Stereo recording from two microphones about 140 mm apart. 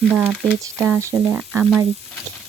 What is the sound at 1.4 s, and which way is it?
Speech, 5° right (ahead or behind).